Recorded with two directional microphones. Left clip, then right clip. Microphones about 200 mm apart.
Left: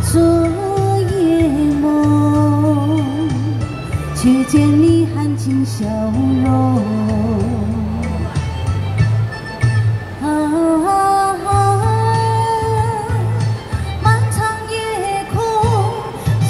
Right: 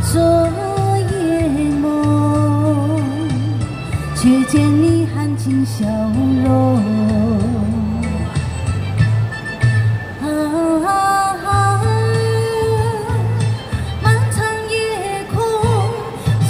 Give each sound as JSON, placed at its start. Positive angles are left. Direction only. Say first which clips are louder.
{"t": 0.1, "sound": "music", "louder": "even", "side_deg": -20}
{"t": 10.2, "sound": "music", "louder": "left 2 dB", "side_deg": -25}
{"t": 14.0, "sound": "music", "louder": "left 2 dB", "side_deg": -25}